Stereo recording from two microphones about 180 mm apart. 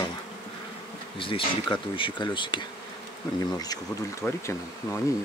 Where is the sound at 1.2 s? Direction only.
30° left (ahead or behind).